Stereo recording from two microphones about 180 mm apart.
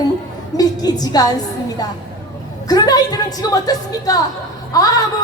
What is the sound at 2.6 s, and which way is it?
Music, 20° left (ahead or behind).